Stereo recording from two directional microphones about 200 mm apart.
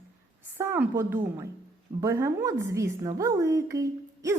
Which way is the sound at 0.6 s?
10° right (ahead or behind).